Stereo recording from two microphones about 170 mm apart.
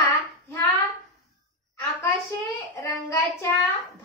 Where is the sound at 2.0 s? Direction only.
15° left (ahead or behind).